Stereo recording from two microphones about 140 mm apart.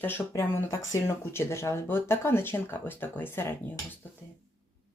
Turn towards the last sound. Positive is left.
turn(degrees=15)  # may be behind; listen again after turning